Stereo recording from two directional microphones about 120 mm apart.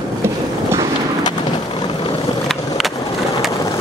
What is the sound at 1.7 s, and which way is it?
Boat, 40° left (ahead or behind).